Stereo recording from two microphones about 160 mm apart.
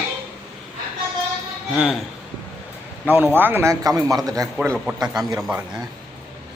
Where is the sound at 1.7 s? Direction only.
5° right (ahead or behind).